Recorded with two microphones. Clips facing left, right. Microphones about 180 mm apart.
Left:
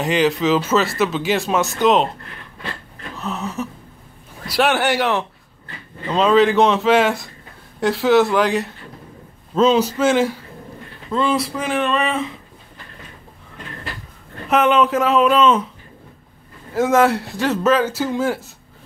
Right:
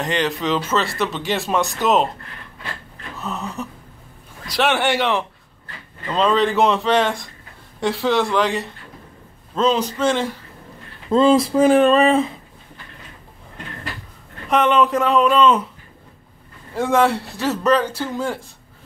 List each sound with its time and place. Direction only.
0.0 s speech: 5° left (ahead or behind)
3.2 s a sound: centre (ahead or behind)
4.5 s speech: centre (ahead or behind)
11.1 s speech: 30° right (ahead or behind)
11.5 s a sound: 40° right (ahead or behind)
14.5 s speech: 5° left (ahead or behind)
16.7 s speech: centre (ahead or behind)